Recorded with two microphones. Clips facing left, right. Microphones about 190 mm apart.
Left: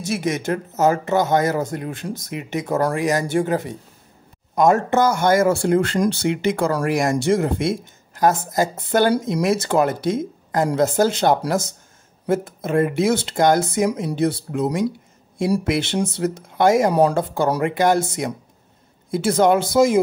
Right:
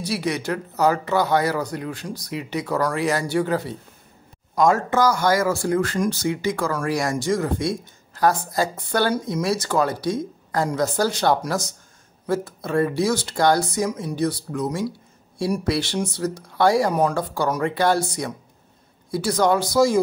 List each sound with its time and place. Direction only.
0.5 s speech: 20° left (ahead or behind)
1.9 s speech: 50° left (ahead or behind)
2.3 s a woman's voice: 20° left (ahead or behind)